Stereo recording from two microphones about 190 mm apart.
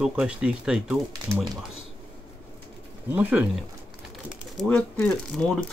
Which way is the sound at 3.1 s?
5° right (ahead or behind).